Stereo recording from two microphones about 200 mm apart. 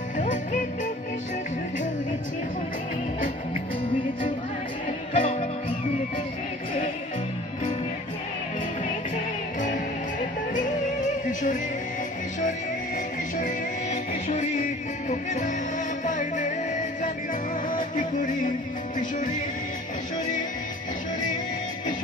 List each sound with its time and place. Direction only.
0.2 s music: 40° left (ahead or behind)
5.1 s music: 35° left (ahead or behind)
10.5 s music: 40° left (ahead or behind)
16.1 s music: 40° left (ahead or behind)
17.6 s music: 40° left (ahead or behind)